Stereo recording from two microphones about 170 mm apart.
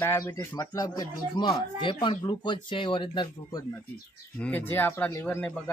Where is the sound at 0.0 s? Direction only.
15° left (ahead or behind).